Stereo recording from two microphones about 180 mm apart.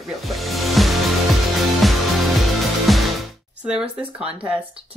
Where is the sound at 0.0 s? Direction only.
Centre (ahead or behind).